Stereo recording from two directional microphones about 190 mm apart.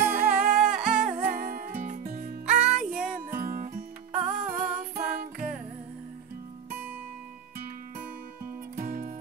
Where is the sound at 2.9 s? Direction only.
5° right (ahead or behind).